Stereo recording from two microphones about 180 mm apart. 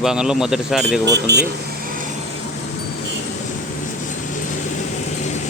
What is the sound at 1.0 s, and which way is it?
Speech, 70° right (ahead or behind).